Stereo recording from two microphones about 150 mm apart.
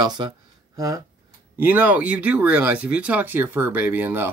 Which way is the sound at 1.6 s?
10° right (ahead or behind).